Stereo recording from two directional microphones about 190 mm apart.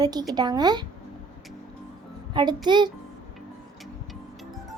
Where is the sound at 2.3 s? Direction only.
25° right (ahead or behind).